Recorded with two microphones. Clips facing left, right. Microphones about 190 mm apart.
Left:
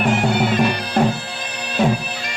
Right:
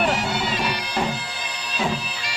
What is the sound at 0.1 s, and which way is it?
Bagpipes, 55° left (ahead or behind).